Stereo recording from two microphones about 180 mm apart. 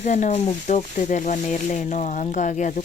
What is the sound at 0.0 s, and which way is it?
Speech, 40° left (ahead or behind).